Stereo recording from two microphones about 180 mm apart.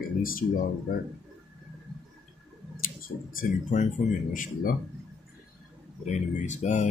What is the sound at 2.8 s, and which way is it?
Speech, 50° left (ahead or behind).